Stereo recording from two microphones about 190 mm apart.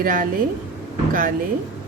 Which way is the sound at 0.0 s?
45° right (ahead or behind).